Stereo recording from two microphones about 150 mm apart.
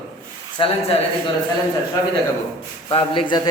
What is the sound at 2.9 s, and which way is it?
Speech, 35° left (ahead or behind).